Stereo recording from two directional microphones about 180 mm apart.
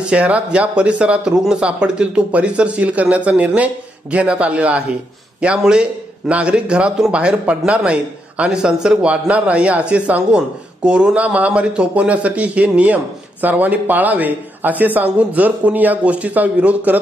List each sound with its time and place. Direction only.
0.0 s a man's voice: 5° right (ahead or behind)